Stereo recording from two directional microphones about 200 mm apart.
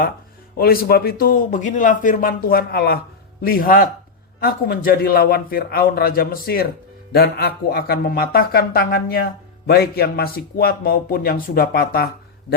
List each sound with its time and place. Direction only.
0.5 s speech: 50° left (ahead or behind)